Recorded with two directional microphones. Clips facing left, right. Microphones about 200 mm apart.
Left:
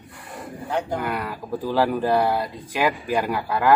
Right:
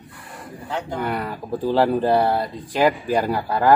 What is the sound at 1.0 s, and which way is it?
Speech, 25° right (ahead or behind).